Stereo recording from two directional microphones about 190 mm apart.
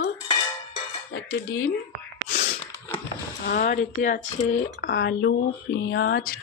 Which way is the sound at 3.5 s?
45° left (ahead or behind).